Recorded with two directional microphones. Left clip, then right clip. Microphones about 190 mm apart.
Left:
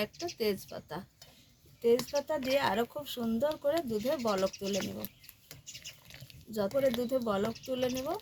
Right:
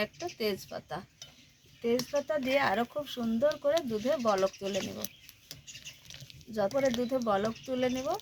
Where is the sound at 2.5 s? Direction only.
40° left (ahead or behind).